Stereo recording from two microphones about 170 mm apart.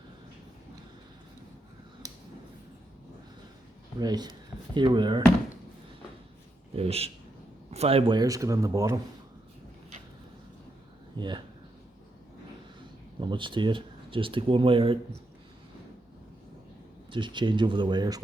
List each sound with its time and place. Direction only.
4.0 s a man's voice: 25° right (ahead or behind)
6.7 s a man's voice: 35° right (ahead or behind); by 9.0 s 20° right (ahead or behind)
11.2 s a man's voice: 25° right (ahead or behind)
13.1 s speech: 30° right (ahead or behind)
17.1 s a man's voice: 30° right (ahead or behind)